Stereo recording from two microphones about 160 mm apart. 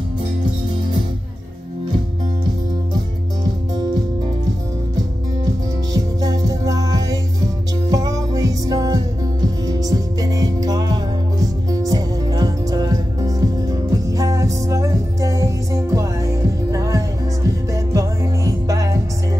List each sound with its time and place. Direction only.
3.7 s music: 25° right (ahead or behind)
5.9 s music: 25° right (ahead or behind)